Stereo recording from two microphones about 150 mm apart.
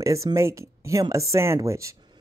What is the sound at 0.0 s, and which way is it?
Speech, 20° right (ahead or behind).